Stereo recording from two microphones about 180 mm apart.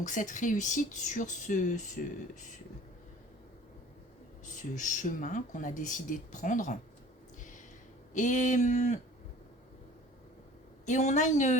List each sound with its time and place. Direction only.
0.0 s speech: 45° left (ahead or behind)
4.4 s speech: 45° left (ahead or behind)
8.1 s speech: 45° left (ahead or behind)
10.8 s a woman's voice: 40° left (ahead or behind)